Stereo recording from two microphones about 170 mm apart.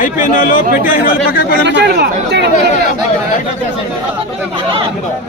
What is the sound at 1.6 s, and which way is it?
Speech, 75° right (ahead or behind).